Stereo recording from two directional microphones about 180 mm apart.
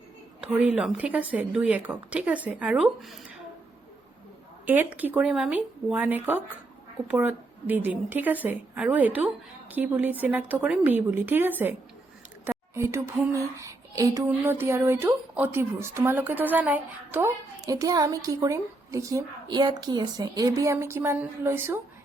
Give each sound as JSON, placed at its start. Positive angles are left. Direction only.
{"t": 0.6, "sound": "a woman's voice", "side_deg": -5}
{"t": 4.6, "sound": "a woman's voice", "side_deg": -10}